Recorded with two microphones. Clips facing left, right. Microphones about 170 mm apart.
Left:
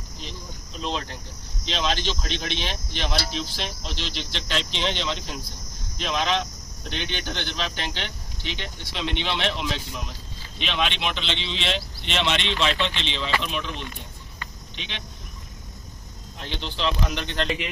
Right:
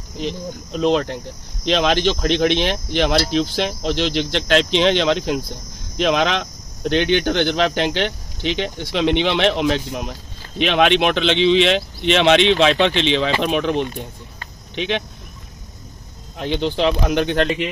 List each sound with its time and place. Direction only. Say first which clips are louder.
0.2 s speech: right 14 dB; 65° right (ahead or behind)
16.3 s speech: right 12 dB; 55° right (ahead or behind)